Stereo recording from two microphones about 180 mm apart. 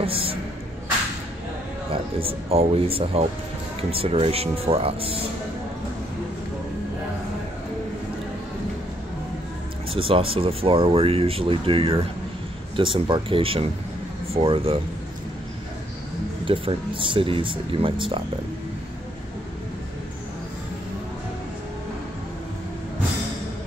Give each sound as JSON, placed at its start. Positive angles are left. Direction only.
{"t": 0.0, "sound": "speech", "side_deg": -30}
{"t": 1.9, "sound": "speech", "side_deg": -30}
{"t": 9.9, "sound": "speech", "side_deg": -30}
{"t": 16.4, "sound": "speech", "side_deg": -30}